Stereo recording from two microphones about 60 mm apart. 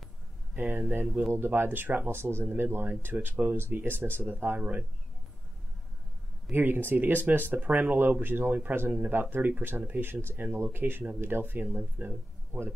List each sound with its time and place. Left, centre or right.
0.6 s speech: right
4.6 s speech: right
6.5 s speech: right